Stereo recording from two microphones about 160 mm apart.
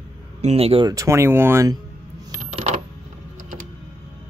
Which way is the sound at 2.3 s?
45° right (ahead or behind).